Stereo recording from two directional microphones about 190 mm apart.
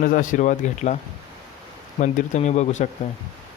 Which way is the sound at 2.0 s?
40° left (ahead or behind).